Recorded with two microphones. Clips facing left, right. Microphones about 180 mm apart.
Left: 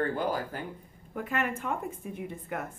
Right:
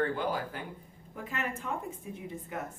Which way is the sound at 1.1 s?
60° left (ahead or behind).